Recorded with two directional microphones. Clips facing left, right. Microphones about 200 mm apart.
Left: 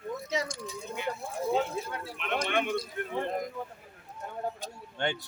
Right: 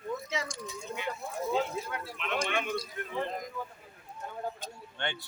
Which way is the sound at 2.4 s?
55° left (ahead or behind).